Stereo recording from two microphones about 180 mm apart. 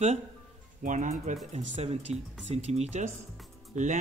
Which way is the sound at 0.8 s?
45° right (ahead or behind).